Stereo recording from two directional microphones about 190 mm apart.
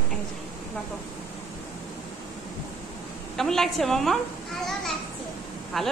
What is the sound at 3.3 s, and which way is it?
Speech, centre (ahead or behind).